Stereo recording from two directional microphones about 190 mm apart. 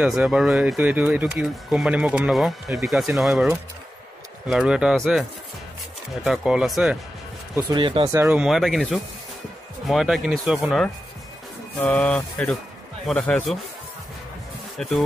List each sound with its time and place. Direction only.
0.0 s speech: 5° right (ahead or behind)
6.2 s speech: centre (ahead or behind)
7.7 s speech: 25° right (ahead or behind)
8.1 s speech: 10° right (ahead or behind)
14.8 s speech: 5° left (ahead or behind)